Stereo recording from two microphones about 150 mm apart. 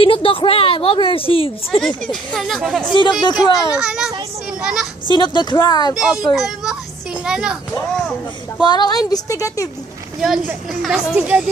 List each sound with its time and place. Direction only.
0.0 s speech: 35° left (ahead or behind)
1.8 s speech: centre (ahead or behind)
3.3 s a woman's voice: 30° left (ahead or behind)
3.7 s speech: 5° right (ahead or behind)
5.1 s speech: 30° left (ahead or behind)
5.9 s speech: 5° right (ahead or behind)
8.5 s a woman's voice: 30° left (ahead or behind)
10.2 s speech: 5° right (ahead or behind)